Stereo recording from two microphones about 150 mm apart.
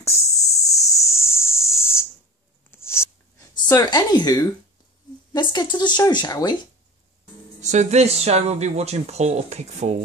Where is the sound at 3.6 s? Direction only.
30° left (ahead or behind).